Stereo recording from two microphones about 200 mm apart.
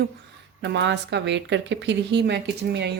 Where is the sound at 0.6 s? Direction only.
60° right (ahead or behind).